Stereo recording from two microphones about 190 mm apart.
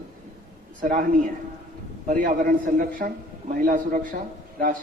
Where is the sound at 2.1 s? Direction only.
45° right (ahead or behind).